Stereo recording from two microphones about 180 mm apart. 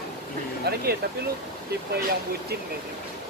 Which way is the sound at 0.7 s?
60° right (ahead or behind).